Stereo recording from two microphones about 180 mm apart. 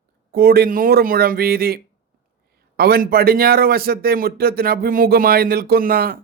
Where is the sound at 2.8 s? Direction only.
60° right (ahead or behind).